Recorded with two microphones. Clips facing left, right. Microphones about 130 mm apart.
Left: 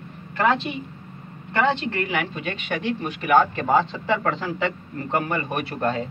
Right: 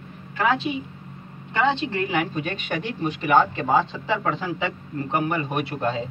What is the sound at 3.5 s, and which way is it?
A man's voice, 10° right (ahead or behind).